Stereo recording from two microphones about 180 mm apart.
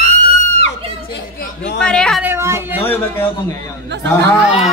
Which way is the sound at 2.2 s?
15° right (ahead or behind).